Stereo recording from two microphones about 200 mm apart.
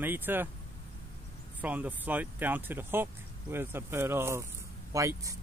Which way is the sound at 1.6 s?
10° right (ahead or behind).